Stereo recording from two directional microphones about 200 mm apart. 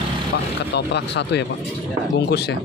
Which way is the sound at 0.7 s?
60° left (ahead or behind).